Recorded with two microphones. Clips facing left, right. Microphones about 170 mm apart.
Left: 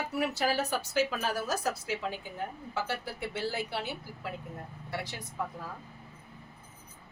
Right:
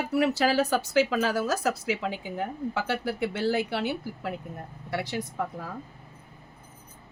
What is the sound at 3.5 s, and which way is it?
A woman's voice, 70° right (ahead or behind).